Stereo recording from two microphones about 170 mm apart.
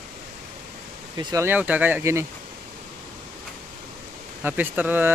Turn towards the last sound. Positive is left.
turn(degrees=-10)  # may be behind; listen again after turning